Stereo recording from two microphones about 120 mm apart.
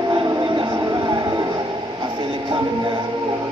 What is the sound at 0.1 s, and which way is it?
Music, 40° right (ahead or behind).